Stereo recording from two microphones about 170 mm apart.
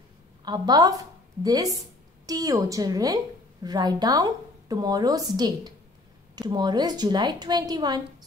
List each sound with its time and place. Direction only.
0.5 s a woman's voice: 25° right (ahead or behind)